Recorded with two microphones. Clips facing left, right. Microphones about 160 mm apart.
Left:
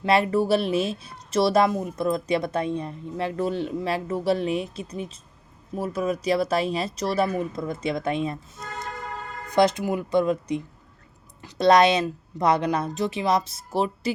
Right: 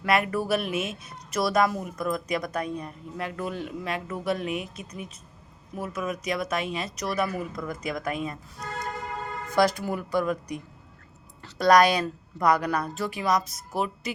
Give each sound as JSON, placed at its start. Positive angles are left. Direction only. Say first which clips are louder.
{"t": 0.0, "sound": "speech", "louder": "left 4 dB", "side_deg": 30}